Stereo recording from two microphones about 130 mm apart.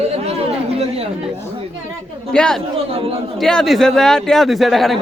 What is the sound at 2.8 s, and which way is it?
Speech, 45° right (ahead or behind).